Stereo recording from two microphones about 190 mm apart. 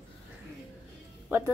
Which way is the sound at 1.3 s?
10° right (ahead or behind).